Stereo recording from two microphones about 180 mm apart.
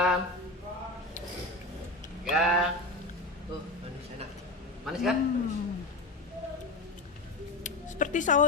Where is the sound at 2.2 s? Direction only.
5° right (ahead or behind).